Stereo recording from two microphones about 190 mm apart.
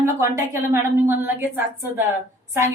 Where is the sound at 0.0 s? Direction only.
15° right (ahead or behind).